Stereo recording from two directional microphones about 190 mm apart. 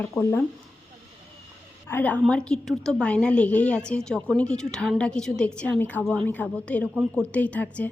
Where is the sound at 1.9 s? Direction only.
10° left (ahead or behind).